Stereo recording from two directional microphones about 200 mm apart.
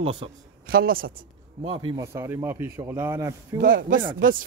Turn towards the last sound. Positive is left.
turn(degrees=-45)  # may be behind; listen again after turning